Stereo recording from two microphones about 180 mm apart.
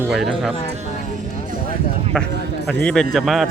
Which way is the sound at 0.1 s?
Centre (ahead or behind).